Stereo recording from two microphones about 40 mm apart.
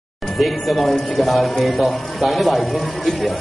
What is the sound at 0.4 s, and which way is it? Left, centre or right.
A man's voice, centre.